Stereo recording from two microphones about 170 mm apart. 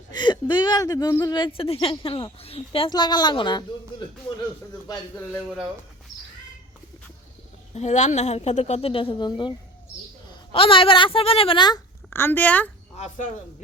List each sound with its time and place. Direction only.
0.1 s speech: 25° left (ahead or behind)
4.9 s speech: 15° left (ahead or behind)
7.7 s a woman's voice: 40° left (ahead or behind); by 11.8 s 25° left (ahead or behind)
12.1 s speech: 10° left (ahead or behind)